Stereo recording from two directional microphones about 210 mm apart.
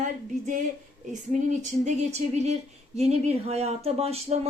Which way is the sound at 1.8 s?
35° right (ahead or behind).